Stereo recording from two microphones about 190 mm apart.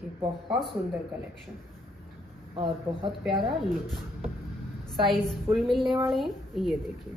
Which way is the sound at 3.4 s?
Centre (ahead or behind).